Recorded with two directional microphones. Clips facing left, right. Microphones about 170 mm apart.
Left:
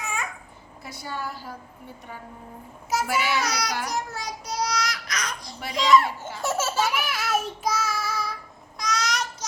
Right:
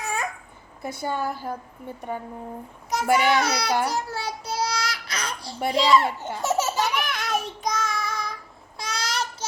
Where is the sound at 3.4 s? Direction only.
30° right (ahead or behind).